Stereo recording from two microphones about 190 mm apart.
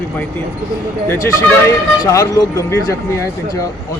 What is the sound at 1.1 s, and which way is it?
A man's voice, 15° left (ahead or behind).